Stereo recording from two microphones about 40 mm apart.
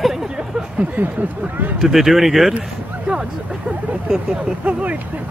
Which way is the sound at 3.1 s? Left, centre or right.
Right.